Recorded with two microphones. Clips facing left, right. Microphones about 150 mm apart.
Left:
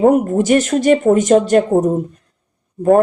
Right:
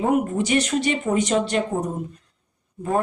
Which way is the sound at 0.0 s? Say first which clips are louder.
Left 8 dB; 45° left (ahead or behind).